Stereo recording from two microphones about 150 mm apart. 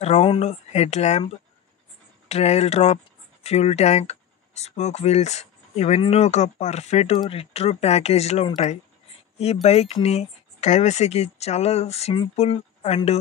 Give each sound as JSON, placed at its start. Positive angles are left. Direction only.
{"t": 0.0, "sound": "speech", "side_deg": 40}
{"t": 2.2, "sound": "speech", "side_deg": 45}